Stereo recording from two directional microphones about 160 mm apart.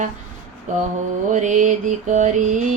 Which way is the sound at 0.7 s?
50° right (ahead or behind).